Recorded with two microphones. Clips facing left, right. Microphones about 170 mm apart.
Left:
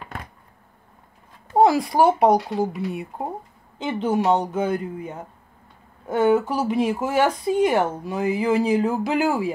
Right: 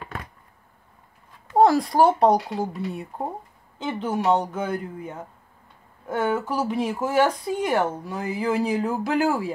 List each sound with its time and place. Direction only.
1.6 s speech: 10° left (ahead or behind)